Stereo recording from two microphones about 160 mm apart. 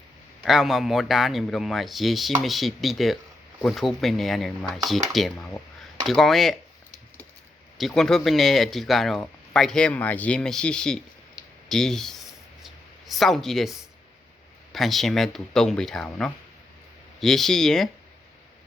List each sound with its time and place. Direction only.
0.4 s speech: centre (ahead or behind)
7.8 s speech: centre (ahead or behind)
11.4 s clicking: 25° left (ahead or behind)
11.7 s speech: 5° left (ahead or behind)
12.6 s a sound: centre (ahead or behind)
14.7 s speech: centre (ahead or behind)